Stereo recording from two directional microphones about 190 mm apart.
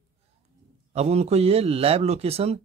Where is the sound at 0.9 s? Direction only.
35° right (ahead or behind).